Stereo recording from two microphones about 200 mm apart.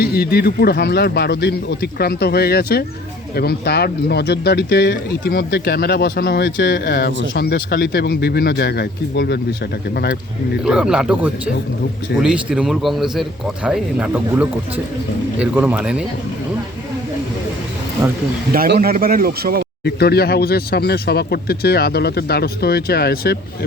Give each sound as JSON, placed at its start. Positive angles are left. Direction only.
{"t": 0.0, "sound": "speech", "side_deg": 55}
{"t": 10.6, "sound": "a man's voice", "side_deg": -5}
{"t": 18.5, "sound": "a man's voice", "side_deg": -45}
{"t": 19.8, "sound": "speech", "side_deg": 50}